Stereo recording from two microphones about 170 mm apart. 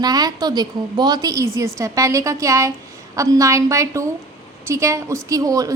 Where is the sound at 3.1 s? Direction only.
20° right (ahead or behind).